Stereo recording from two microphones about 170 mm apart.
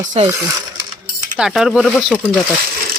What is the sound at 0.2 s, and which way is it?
Speech, 40° right (ahead or behind).